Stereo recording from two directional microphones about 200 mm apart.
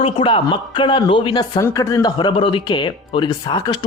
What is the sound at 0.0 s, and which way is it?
Speech, 25° left (ahead or behind).